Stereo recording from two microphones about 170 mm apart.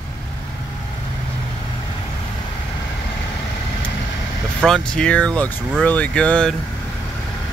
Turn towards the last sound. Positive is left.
turn(degrees=5)  # may be behind; listen again after turning